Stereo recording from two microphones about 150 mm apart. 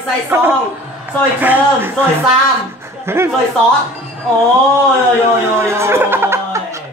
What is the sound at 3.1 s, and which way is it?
Speech, 15° right (ahead or behind).